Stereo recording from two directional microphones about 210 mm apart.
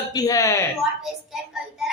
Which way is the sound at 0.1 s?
15° left (ahead or behind).